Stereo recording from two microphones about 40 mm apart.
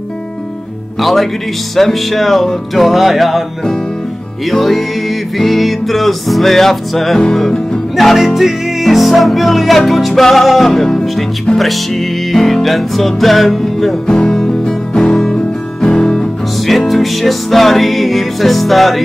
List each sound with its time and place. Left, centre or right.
1.0 s music: centre
4.5 s music: centre
7.9 s music: centre
14.0 s music: centre
16.6 s music: centre